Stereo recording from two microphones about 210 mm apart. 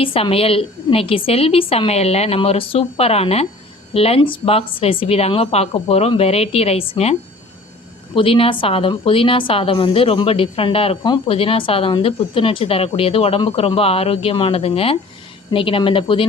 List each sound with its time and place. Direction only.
0.0 s a woman's voice: 25° left (ahead or behind)